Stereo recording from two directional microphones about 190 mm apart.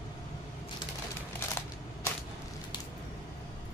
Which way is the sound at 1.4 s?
15° left (ahead or behind).